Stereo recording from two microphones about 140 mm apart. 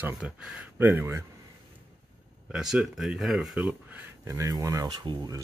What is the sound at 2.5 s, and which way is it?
Speech, 5° right (ahead or behind).